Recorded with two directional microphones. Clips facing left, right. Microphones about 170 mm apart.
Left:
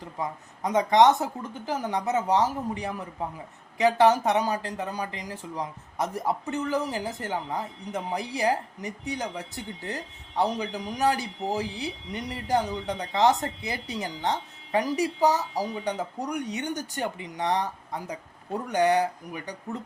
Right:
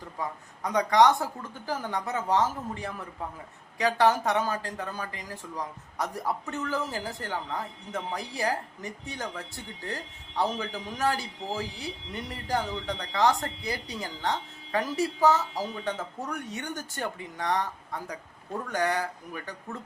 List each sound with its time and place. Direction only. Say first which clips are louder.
0.2 s speech: left 3 dB; 20° left (ahead or behind)